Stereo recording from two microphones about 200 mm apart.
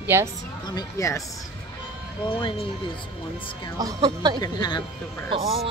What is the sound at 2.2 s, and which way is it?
Speech, 25° left (ahead or behind).